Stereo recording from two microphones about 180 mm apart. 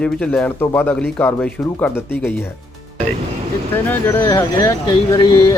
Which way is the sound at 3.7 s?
15° left (ahead or behind).